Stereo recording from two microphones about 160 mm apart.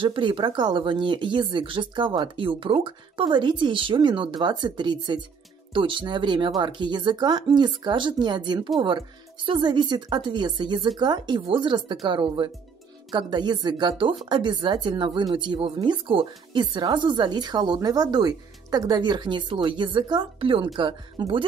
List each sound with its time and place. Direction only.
0.0 s speech: 30° right (ahead or behind)